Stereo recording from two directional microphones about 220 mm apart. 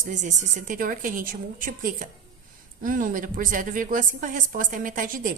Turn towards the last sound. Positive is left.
turn(degrees=-35)  # may be behind; listen again after turning